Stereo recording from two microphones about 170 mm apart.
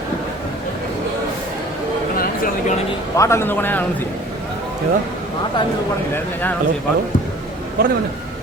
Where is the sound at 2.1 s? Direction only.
55° left (ahead or behind).